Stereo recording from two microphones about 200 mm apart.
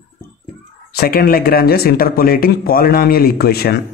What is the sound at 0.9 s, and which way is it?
Speech, 50° left (ahead or behind).